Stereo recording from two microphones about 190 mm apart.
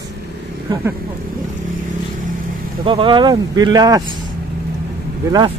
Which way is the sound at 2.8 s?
25° right (ahead or behind).